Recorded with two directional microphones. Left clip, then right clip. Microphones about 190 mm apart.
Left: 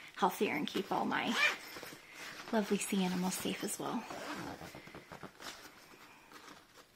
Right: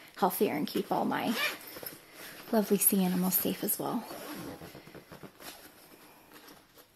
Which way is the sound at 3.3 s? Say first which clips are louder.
Right 4 dB; 35° right (ahead or behind).